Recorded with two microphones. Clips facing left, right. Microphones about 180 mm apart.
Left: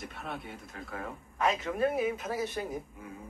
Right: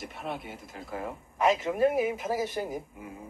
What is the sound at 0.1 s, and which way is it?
A man's voice, 10° right (ahead or behind).